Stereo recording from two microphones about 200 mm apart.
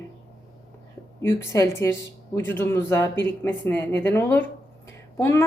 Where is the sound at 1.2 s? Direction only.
10° left (ahead or behind).